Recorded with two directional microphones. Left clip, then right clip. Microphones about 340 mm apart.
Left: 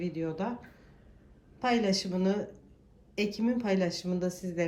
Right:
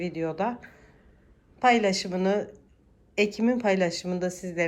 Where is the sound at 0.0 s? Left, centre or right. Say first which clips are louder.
Right 6 dB; centre.